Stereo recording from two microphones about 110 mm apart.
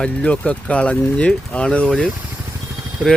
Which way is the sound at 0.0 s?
10° left (ahead or behind).